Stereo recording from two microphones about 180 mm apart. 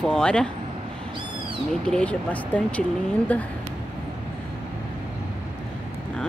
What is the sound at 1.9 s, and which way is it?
Speech, 5° left (ahead or behind).